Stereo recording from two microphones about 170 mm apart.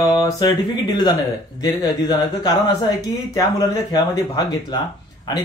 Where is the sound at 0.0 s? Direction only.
20° left (ahead or behind).